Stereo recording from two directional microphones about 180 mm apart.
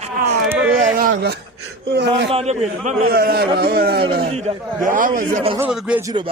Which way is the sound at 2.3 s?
35° right (ahead or behind).